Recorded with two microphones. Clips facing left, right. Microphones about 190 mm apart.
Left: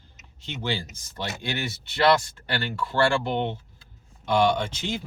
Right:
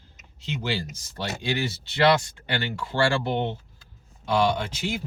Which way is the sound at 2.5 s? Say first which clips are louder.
Even; 20° right (ahead or behind).